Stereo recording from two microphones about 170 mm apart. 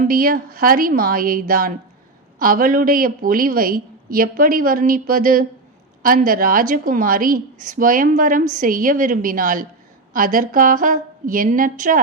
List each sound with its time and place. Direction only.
0.1 s a woman's voice: 60° right (ahead or behind)